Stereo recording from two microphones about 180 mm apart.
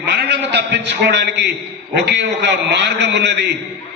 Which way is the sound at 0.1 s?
65° right (ahead or behind).